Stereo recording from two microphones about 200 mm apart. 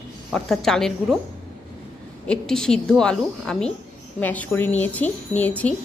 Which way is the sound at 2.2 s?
5° left (ahead or behind).